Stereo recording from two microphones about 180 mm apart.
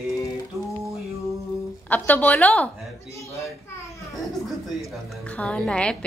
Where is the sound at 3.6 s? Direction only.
15° left (ahead or behind).